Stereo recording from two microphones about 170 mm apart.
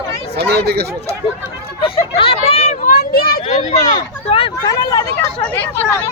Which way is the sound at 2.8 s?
60° left (ahead or behind).